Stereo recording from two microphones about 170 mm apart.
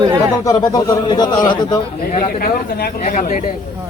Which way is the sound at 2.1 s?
60° left (ahead or behind).